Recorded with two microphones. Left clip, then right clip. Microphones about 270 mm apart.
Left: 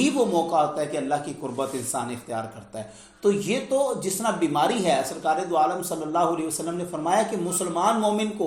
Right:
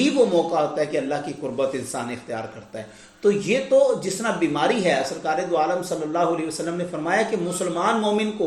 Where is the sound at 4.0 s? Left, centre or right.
Left.